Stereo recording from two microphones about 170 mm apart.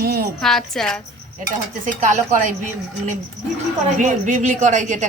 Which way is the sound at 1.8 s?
45° right (ahead or behind).